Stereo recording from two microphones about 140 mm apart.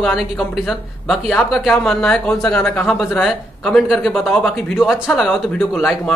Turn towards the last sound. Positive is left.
turn(degrees=0)  # may be behind; listen again after turning